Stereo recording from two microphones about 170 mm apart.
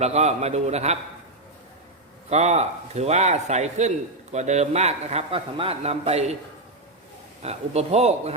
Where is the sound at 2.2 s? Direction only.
40° right (ahead or behind).